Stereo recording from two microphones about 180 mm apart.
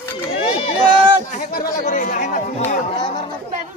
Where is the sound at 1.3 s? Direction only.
40° left (ahead or behind).